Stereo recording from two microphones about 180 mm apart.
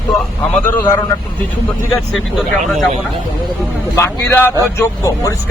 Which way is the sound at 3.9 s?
15° left (ahead or behind).